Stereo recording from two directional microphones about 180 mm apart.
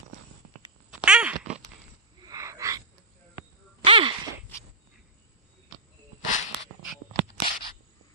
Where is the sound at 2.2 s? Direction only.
15° right (ahead or behind).